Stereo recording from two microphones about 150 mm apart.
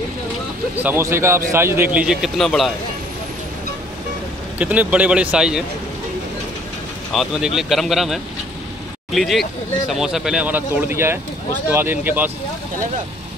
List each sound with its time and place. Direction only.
0.8 s speech: 15° right (ahead or behind)
2.0 s speech: 5° right (ahead or behind)
4.6 s speech: 10° right (ahead or behind)
7.1 s speech: centre (ahead or behind)